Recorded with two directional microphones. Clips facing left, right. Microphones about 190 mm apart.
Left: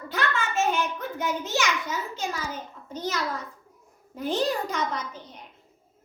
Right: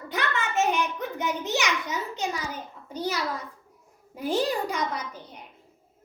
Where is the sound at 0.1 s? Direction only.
15° right (ahead or behind).